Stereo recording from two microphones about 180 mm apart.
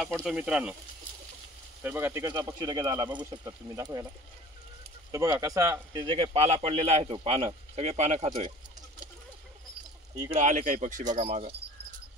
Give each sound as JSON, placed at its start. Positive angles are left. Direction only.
{"t": 0.0, "sound": "speech", "side_deg": 0}
{"t": 1.8, "sound": "speech", "side_deg": -10}
{"t": 5.1, "sound": "speech", "side_deg": -15}
{"t": 10.2, "sound": "speech", "side_deg": -40}